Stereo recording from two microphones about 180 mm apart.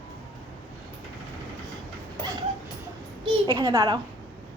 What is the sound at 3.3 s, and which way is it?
Speech, 25° right (ahead or behind).